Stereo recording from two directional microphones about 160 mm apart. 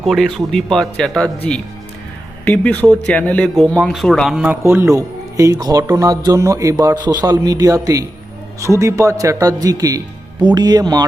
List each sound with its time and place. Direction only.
0.0 s speech: centre (ahead or behind)
4.6 s speech: 15° right (ahead or behind)